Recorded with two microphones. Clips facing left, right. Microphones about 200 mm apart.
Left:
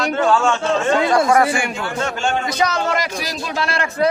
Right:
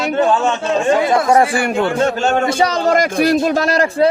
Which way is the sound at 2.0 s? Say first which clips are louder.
Right 2 dB; 40° right (ahead or behind).